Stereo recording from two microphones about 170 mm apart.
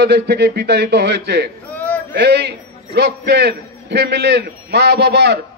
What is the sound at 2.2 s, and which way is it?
A man's voice, 75° right (ahead or behind).